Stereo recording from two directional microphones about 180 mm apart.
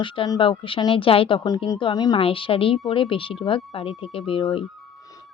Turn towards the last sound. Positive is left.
turn(degrees=30)  # may be behind; listen again after turning